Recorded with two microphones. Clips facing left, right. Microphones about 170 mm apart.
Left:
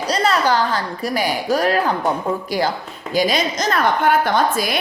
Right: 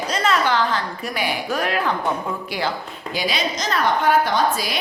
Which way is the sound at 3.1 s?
45° left (ahead or behind).